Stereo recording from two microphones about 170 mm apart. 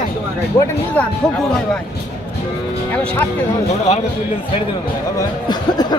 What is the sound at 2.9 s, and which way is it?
Speech, 10° left (ahead or behind).